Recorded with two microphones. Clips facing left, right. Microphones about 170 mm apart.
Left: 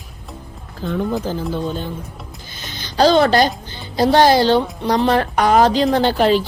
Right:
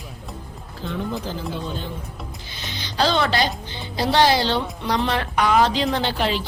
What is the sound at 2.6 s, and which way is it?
Speech, 45° left (ahead or behind).